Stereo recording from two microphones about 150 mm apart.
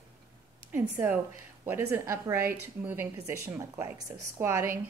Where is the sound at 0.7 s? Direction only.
10° right (ahead or behind).